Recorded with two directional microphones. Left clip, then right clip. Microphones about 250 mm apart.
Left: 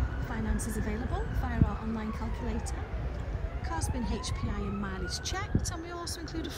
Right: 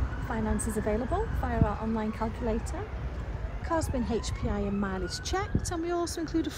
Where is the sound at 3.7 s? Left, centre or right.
Centre.